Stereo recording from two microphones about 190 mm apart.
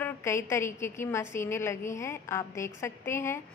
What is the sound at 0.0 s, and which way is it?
A woman's voice, 15° left (ahead or behind).